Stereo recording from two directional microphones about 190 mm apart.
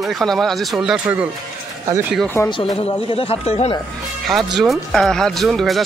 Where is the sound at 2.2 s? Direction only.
10° left (ahead or behind).